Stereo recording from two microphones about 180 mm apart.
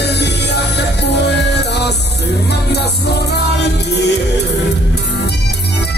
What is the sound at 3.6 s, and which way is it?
Music, 70° left (ahead or behind).